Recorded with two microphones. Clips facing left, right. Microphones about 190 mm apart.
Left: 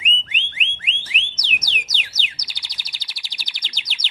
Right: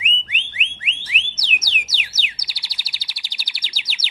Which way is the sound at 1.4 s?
Centre (ahead or behind).